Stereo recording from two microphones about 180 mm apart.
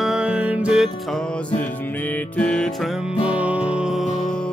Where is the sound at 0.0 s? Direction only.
5° right (ahead or behind).